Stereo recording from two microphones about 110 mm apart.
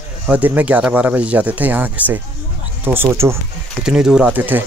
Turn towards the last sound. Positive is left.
turn(degrees=-5)  # may be behind; listen again after turning